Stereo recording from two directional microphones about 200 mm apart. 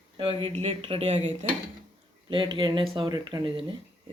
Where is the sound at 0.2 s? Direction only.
25° right (ahead or behind).